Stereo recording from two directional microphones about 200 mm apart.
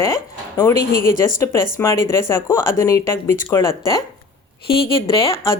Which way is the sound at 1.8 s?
15° left (ahead or behind).